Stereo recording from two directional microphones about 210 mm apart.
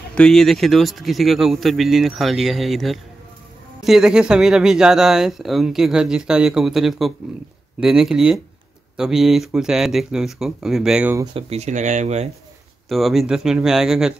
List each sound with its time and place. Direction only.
0.1 s speech: 5° left (ahead or behind)
11.3 s speech: 30° right (ahead or behind)
12.8 s speech: centre (ahead or behind)